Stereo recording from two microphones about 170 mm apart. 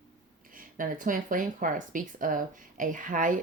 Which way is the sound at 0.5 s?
55° right (ahead or behind).